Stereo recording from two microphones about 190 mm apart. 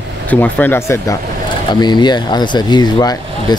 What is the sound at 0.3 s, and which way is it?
Speech, 10° left (ahead or behind).